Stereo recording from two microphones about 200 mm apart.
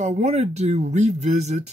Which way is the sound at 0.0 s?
35° right (ahead or behind).